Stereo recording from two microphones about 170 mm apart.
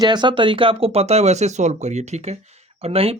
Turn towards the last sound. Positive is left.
turn(degrees=-35)  # may be behind; listen again after turning